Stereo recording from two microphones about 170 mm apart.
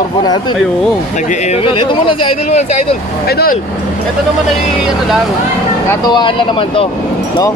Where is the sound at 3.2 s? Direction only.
65° left (ahead or behind).